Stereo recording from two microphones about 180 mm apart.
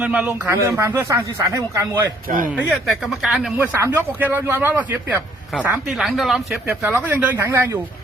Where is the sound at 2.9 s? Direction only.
Centre (ahead or behind).